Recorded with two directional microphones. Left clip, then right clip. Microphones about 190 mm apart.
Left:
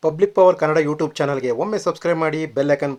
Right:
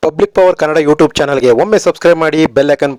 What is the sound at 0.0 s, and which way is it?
Speech, 50° right (ahead or behind).